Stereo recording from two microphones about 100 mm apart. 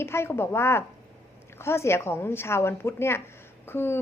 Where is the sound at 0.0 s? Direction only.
25° left (ahead or behind).